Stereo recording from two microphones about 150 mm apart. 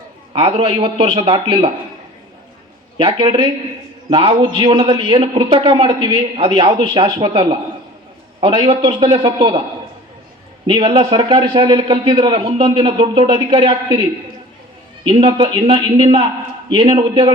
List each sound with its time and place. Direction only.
0.3 s a man's voice: 35° right (ahead or behind)
3.0 s a man's voice: 35° right (ahead or behind)
10.7 s a man's voice: 35° right (ahead or behind)
15.0 s a man's voice: 35° right (ahead or behind)